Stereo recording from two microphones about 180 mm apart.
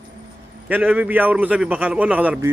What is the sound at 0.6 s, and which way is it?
A man's voice, 10° right (ahead or behind).